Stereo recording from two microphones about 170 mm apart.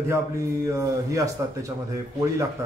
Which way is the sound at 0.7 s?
20° right (ahead or behind).